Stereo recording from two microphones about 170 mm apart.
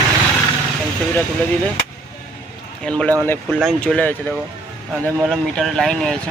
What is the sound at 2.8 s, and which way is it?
Speech, 5° left (ahead or behind).